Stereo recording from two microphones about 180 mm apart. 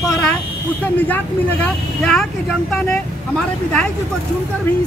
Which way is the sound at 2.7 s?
5° left (ahead or behind).